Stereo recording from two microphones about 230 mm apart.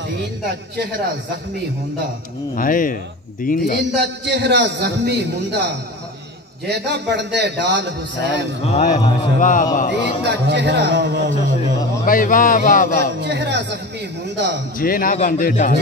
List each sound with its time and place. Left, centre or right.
0.2 s a man's voice: right
2.5 s a man's voice: left
3.9 s a man's voice: right
8.7 s a man's voice: left
10.2 s a man's voice: right
12.1 s a man's voice: left
13.0 s a man's voice: right
14.8 s a man's voice: left